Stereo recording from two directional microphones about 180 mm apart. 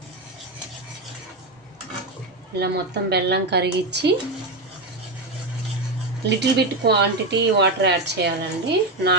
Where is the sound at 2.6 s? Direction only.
70° right (ahead or behind).